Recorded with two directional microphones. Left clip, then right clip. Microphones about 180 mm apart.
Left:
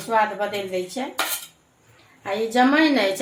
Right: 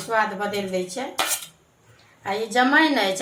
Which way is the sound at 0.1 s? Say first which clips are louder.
Left 2 dB; 40° left (ahead or behind).